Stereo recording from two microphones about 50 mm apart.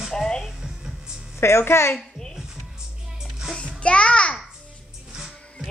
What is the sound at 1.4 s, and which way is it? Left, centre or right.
Speech, left.